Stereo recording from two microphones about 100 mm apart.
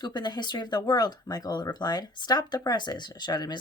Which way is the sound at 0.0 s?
45° left (ahead or behind).